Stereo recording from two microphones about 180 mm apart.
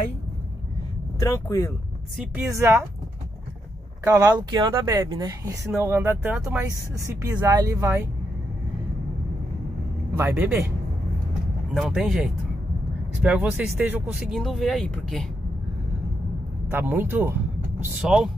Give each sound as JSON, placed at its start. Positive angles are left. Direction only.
{"t": 1.2, "sound": "speech", "side_deg": 15}
{"t": 2.5, "sound": "speech", "side_deg": -15}
{"t": 4.0, "sound": "speech", "side_deg": -20}
{"t": 10.1, "sound": "speech", "side_deg": -10}
{"t": 11.7, "sound": "speech", "side_deg": 0}
{"t": 16.7, "sound": "speech", "side_deg": -10}